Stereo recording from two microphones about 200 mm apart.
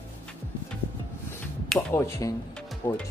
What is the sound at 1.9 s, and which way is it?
Speech, 15° left (ahead or behind).